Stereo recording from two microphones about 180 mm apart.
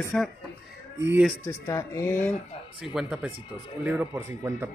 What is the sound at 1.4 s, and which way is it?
Speech, 15° left (ahead or behind).